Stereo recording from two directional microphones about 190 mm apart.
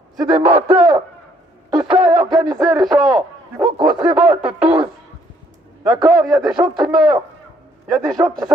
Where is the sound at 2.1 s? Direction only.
20° right (ahead or behind).